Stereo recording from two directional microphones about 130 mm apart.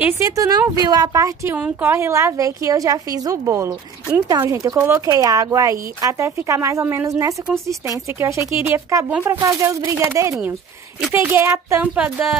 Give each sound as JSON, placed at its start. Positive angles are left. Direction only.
{"t": 0.2, "sound": "speech", "side_deg": -25}